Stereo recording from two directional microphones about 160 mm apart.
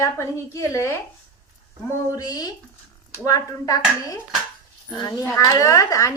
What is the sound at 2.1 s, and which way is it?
A woman's voice, 25° left (ahead or behind).